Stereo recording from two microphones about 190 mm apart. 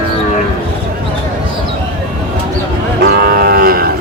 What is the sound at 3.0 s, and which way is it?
Cattle, 55° right (ahead or behind).